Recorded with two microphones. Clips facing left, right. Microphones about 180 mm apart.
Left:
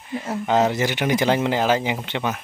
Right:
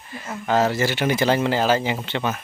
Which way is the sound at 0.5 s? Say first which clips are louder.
Even; 20° left (ahead or behind).